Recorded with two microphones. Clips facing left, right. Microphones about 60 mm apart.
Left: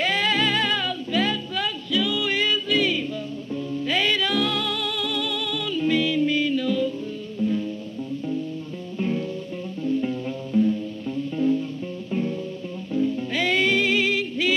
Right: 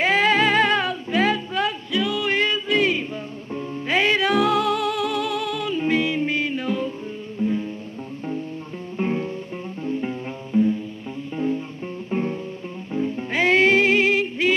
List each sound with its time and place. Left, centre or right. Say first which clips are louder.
0.0 s music: right 4 dB; right
0.5 s music: right 5 dB; right
0.7 s music: right 3 dB; right
1.6 s music: right 2 dB; centre
3.5 s music: left 1 dB; right
4.4 s music: right 6 dB; centre
8.9 s music: right 2 dB; right
12.1 s music: right 1 dB; right
13.4 s music: right 5 dB; right